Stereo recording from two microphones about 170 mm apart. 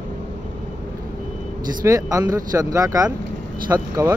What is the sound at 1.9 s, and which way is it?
Speech, 20° right (ahead or behind).